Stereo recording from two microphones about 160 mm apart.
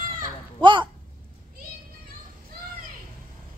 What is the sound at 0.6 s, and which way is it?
Speech, 30° right (ahead or behind).